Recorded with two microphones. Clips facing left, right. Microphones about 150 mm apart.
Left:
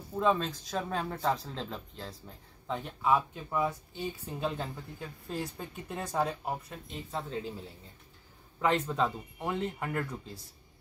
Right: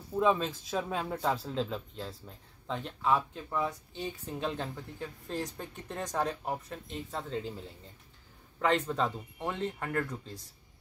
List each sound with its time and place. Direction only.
0.1 s speech: 5° right (ahead or behind)
8.5 s speech: 5° left (ahead or behind)